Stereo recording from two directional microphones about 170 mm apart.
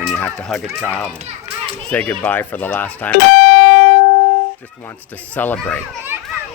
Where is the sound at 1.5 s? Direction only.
35° right (ahead or behind).